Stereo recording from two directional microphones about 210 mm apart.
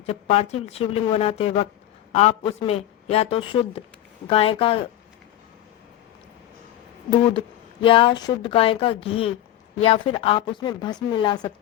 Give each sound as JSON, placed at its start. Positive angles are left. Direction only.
{"t": 0.0, "sound": "a woman's voice", "side_deg": 30}
{"t": 7.3, "sound": "a woman's voice", "side_deg": 25}